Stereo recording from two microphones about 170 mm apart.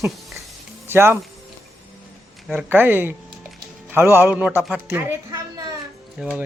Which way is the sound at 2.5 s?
10° right (ahead or behind).